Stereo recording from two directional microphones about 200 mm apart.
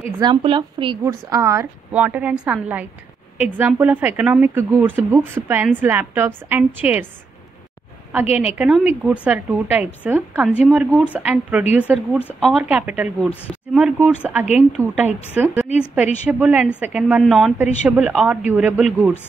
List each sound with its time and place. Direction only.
0.2 s a woman's voice: 25° right (ahead or behind)
1.0 s a woman's voice: 15° right (ahead or behind)
8.4 s a woman's voice: 5° right (ahead or behind)
12.2 s speech: 10° left (ahead or behind)
12.5 s a woman's voice: 5° right (ahead or behind)